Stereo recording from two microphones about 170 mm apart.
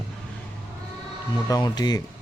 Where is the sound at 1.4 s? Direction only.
25° left (ahead or behind).